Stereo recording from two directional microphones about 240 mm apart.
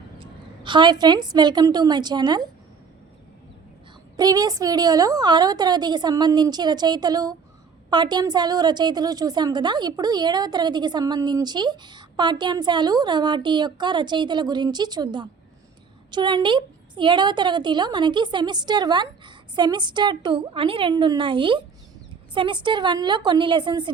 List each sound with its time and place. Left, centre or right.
0.2 s a woman's voice: centre
4.2 s a woman's voice: centre